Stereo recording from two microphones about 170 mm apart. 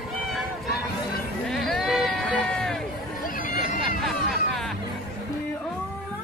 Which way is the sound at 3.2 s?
55° left (ahead or behind).